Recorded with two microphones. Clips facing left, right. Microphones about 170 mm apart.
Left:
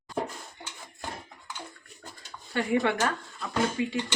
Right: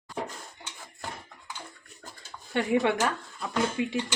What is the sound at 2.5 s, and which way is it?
Speech, 20° right (ahead or behind).